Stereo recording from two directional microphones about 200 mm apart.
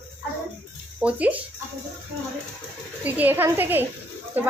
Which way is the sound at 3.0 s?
10° right (ahead or behind).